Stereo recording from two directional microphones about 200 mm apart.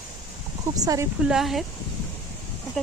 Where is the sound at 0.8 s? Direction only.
15° right (ahead or behind).